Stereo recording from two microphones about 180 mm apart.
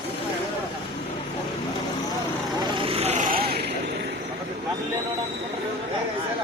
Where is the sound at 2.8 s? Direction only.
35° right (ahead or behind); by 3.7 s 60° right (ahead or behind).